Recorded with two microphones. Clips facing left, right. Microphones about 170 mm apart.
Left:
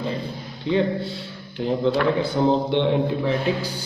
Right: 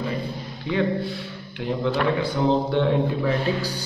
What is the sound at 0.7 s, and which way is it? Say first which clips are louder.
Speech: left 2 dB; 30° left (ahead or behind).